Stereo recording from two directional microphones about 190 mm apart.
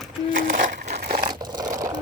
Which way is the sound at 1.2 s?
25° right (ahead or behind).